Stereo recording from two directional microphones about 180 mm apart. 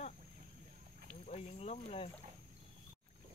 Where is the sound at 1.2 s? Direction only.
35° left (ahead or behind).